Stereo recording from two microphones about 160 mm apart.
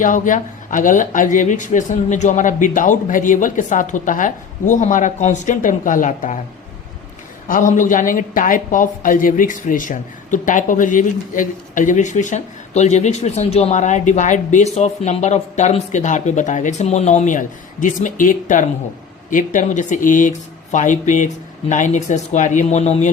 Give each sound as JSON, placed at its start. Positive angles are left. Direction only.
{"t": 0.0, "sound": "speech", "side_deg": 55}
{"t": 7.4, "sound": "speech", "side_deg": 55}